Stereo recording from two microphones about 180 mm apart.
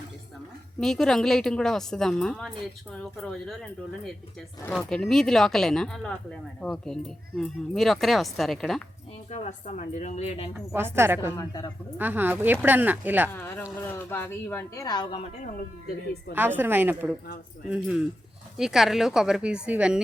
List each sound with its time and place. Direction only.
0.8 s speech: centre (ahead or behind)
4.7 s speech: 5° left (ahead or behind)
9.3 s speech: 40° left (ahead or behind)
10.8 s a woman's voice: 15° right (ahead or behind)
11.3 s speech: 20° left (ahead or behind)
11.9 s a woman's voice: 10° right (ahead or behind)
13.3 s speech: 10° left (ahead or behind)
16.3 s a woman's voice: 10° right (ahead or behind)